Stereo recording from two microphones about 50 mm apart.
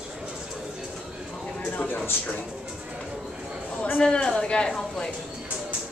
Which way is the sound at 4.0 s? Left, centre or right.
Centre.